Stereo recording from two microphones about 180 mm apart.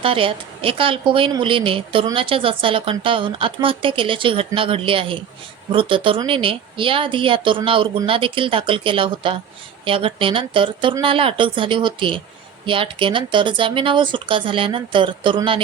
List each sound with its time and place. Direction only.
0.0 s a woman's voice: 30° right (ahead or behind)